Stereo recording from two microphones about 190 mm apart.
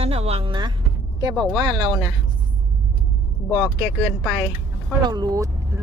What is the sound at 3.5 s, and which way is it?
Speech, 10° left (ahead or behind).